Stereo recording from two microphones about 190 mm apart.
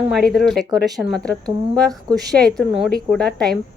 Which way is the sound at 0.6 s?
20° right (ahead or behind).